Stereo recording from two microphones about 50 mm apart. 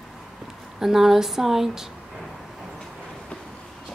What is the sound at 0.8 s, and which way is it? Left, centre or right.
Speech, centre.